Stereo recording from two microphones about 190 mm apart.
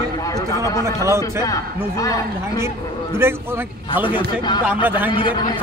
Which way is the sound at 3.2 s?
10° right (ahead or behind).